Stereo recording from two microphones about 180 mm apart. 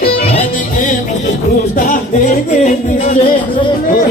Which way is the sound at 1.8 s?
45° left (ahead or behind).